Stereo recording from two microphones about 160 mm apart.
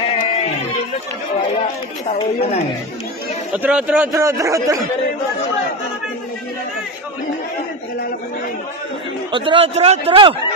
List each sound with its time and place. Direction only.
0.0 s a sound: 35° left (ahead or behind)
3.5 s a man's voice: 10° right (ahead or behind)
4.1 s a man's voice: 20° right (ahead or behind)
9.3 s a man's voice: 30° right (ahead or behind)